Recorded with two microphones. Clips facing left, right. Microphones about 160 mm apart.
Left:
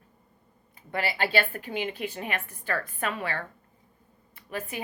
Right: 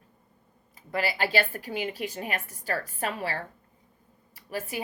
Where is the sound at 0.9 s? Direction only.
40° right (ahead or behind).